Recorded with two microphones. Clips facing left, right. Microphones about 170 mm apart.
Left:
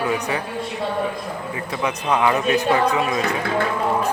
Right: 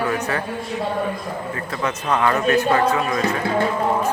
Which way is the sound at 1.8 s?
10° left (ahead or behind).